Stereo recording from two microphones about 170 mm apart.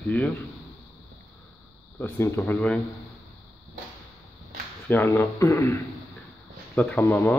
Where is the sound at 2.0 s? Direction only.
15° left (ahead or behind).